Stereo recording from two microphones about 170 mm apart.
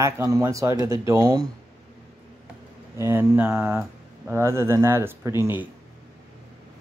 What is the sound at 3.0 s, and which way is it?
Speech, 15° right (ahead or behind).